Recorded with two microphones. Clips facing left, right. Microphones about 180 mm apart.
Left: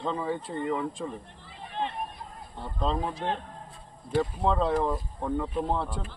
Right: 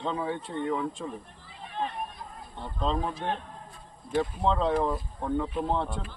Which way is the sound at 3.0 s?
25° left (ahead or behind).